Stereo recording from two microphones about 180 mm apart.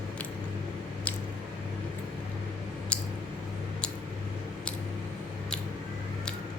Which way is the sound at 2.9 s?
5° left (ahead or behind).